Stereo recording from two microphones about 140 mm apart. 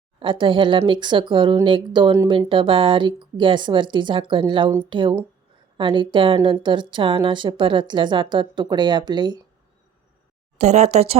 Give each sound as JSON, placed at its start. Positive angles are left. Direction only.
{"t": 0.2, "sound": "a woman's voice", "side_deg": -35}
{"t": 10.6, "sound": "speech", "side_deg": -55}